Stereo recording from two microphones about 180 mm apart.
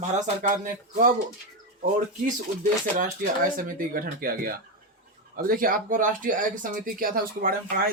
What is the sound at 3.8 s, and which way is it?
A man's voice, 55° right (ahead or behind).